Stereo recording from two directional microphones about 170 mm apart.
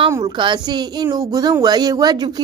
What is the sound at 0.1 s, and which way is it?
A woman's voice, 25° right (ahead or behind).